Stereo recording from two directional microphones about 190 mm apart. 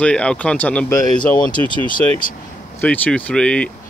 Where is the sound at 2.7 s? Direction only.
10° left (ahead or behind).